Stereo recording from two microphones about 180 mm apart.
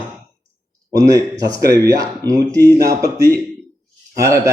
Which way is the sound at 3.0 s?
20° right (ahead or behind).